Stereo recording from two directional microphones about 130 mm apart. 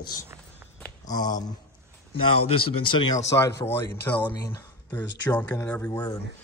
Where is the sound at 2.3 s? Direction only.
45° left (ahead or behind).